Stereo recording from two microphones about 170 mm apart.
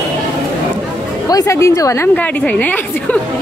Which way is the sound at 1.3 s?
20° left (ahead or behind).